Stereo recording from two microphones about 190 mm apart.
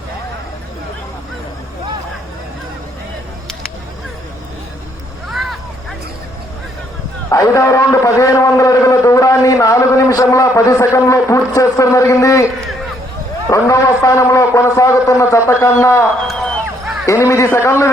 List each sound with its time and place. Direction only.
5.3 s vehicle: centre (ahead or behind)
7.3 s a man's voice: 15° left (ahead or behind)
13.5 s a man's voice: 15° left (ahead or behind)
16.2 s a sound: centre (ahead or behind)
17.1 s a man's voice: 15° left (ahead or behind)